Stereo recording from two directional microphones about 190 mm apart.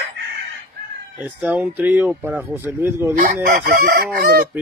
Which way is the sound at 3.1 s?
50° right (ahead or behind).